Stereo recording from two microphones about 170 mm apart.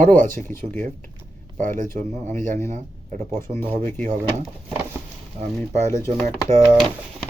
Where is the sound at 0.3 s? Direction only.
15° left (ahead or behind).